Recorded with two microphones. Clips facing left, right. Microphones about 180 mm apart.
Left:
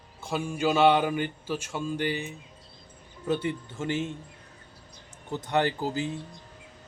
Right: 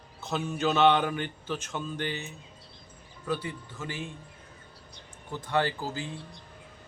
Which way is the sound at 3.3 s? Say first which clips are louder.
Left 5 dB; 25° left (ahead or behind).